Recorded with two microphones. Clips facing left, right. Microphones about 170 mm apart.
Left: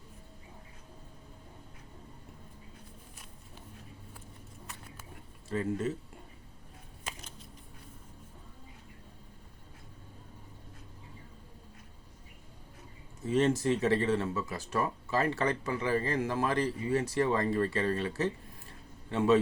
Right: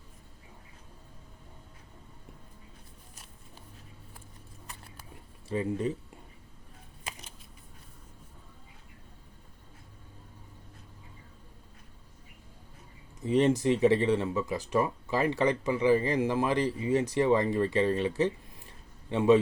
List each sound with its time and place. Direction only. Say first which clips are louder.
5.5 s speech: right 2 dB; 15° right (ahead or behind)
13.2 s speech: right 3 dB; 15° right (ahead or behind)